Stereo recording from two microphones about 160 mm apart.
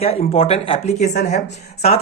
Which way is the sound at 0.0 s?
40° left (ahead or behind).